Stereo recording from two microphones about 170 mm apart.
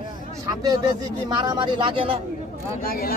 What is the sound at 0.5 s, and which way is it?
Speech, 20° right (ahead or behind).